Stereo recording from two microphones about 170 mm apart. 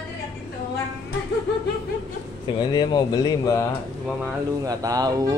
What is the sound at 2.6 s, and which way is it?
Speech, 25° left (ahead or behind).